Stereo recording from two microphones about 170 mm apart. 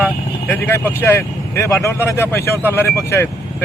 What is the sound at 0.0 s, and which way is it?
Speech, 10° left (ahead or behind).